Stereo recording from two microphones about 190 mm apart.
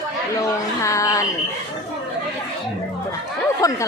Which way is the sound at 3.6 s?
20° left (ahead or behind).